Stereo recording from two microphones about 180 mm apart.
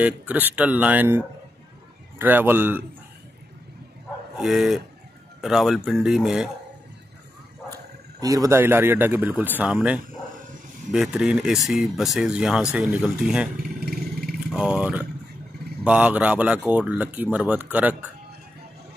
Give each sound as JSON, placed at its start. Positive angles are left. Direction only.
{"t": 0.0, "sound": "speech", "side_deg": -10}
{"t": 4.4, "sound": "speech", "side_deg": 0}
{"t": 8.2, "sound": "speech", "side_deg": -20}
{"t": 13.6, "sound": "motorcycle", "side_deg": -55}
{"t": 14.5, "sound": "speech", "side_deg": -5}